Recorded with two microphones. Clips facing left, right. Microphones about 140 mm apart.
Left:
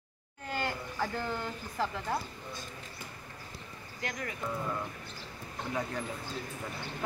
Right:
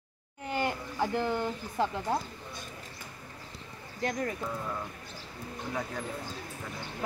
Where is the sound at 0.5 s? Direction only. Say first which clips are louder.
Right 3 dB; 20° right (ahead or behind).